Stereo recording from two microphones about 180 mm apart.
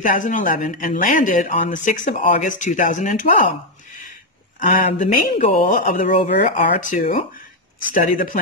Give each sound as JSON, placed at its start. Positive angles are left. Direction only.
{"t": 0.0, "sound": "speech", "side_deg": 45}
{"t": 4.6, "sound": "speech", "side_deg": 45}